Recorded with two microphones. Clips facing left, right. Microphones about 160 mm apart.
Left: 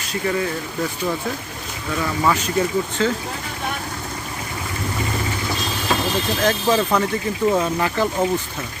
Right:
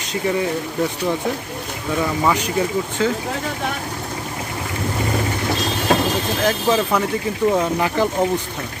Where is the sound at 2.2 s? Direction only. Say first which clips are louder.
Left 3 dB; 15° right (ahead or behind).